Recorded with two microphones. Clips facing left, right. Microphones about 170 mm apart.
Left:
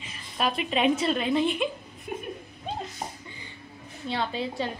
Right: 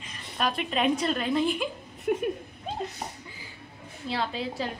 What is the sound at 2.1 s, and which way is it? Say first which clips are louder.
Speech: right 8 dB; 65° right (ahead or behind).